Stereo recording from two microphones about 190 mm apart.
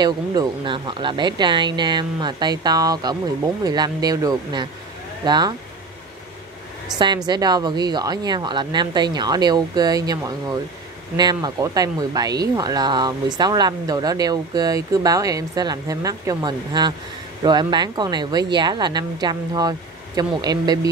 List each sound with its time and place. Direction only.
0.0 s speech: 25° right (ahead or behind)
7.0 s speech: 25° right (ahead or behind)